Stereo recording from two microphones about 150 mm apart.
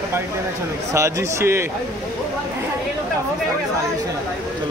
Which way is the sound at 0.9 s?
20° right (ahead or behind).